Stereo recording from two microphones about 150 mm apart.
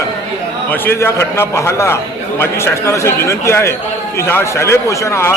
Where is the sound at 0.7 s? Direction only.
15° left (ahead or behind).